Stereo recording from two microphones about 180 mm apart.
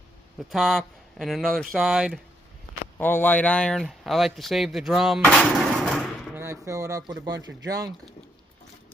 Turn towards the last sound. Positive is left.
turn(degrees=-20)  # may be behind; listen again after turning